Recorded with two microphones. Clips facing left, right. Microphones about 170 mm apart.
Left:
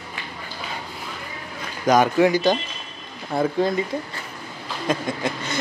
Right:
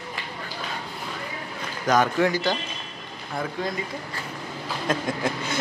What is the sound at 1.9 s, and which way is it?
Speech, 15° left (ahead or behind).